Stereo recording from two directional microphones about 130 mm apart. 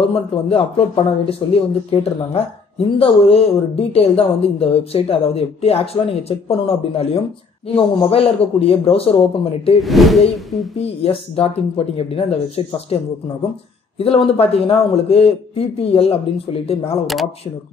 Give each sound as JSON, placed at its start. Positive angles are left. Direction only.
{"t": 0.1, "sound": "speech", "side_deg": 45}
{"t": 9.8, "sound": "speech", "side_deg": 0}
{"t": 11.0, "sound": "speech", "side_deg": 45}
{"t": 17.0, "sound": "speech", "side_deg": 0}